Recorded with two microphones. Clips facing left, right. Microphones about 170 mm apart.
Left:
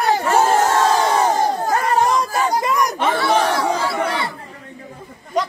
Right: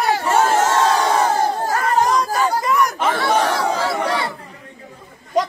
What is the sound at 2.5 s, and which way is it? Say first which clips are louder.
Chatter: even; 15° left (ahead or behind).